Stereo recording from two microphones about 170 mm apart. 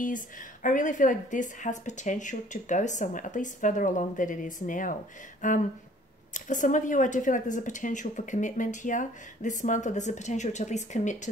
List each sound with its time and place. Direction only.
0.0 s a woman's voice: 50° left (ahead or behind)